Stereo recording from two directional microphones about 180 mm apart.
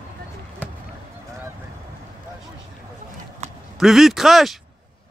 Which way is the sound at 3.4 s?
40° right (ahead or behind).